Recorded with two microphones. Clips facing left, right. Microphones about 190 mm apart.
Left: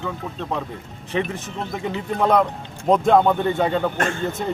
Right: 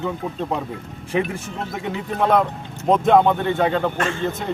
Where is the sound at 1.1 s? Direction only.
10° right (ahead or behind).